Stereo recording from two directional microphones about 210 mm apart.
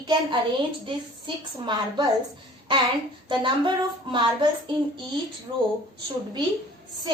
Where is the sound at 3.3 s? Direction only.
20° right (ahead or behind).